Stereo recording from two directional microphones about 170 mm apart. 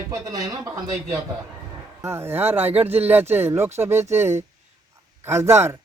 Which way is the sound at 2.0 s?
15° right (ahead or behind).